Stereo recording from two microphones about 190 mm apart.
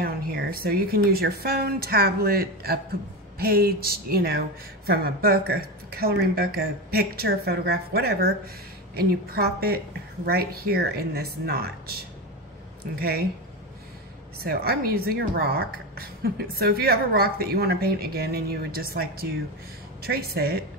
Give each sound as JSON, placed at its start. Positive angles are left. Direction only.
{"t": 0.0, "sound": "a woman's voice", "side_deg": -55}
{"t": 14.4, "sound": "a woman's voice", "side_deg": -55}